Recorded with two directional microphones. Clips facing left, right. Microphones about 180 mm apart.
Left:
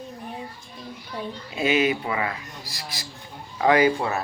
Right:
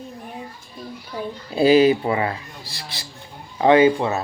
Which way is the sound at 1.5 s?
35° right (ahead or behind).